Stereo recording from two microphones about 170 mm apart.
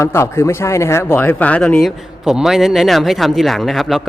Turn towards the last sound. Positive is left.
turn(degrees=0)  # may be behind; listen again after turning